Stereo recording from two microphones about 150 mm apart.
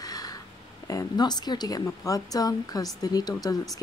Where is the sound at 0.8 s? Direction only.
25° left (ahead or behind).